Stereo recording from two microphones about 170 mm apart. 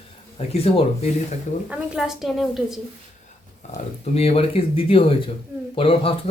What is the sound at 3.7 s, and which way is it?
Speech, 40° left (ahead or behind).